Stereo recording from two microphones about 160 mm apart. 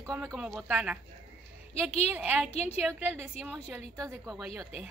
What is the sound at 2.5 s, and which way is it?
Speech, 45° left (ahead or behind).